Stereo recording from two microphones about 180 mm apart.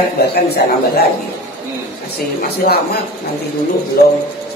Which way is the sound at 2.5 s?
60° left (ahead or behind).